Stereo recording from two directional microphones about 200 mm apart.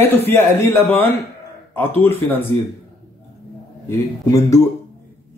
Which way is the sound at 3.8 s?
15° left (ahead or behind).